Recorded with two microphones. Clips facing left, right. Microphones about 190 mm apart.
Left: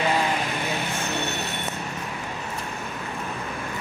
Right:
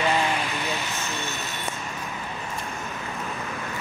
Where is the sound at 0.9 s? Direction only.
65° left (ahead or behind).